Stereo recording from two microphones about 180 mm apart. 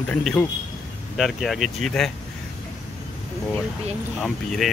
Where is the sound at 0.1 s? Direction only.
10° left (ahead or behind).